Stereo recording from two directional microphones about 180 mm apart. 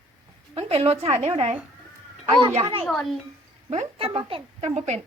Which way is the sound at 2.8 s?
Centre (ahead or behind).